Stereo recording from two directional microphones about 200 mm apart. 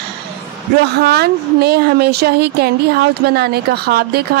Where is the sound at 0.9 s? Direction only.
55° right (ahead or behind).